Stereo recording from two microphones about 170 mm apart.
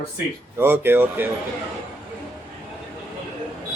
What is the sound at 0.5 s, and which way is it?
Speech, 15° right (ahead or behind).